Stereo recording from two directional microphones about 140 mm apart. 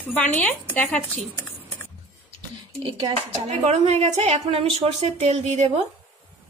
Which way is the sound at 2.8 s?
40° right (ahead or behind).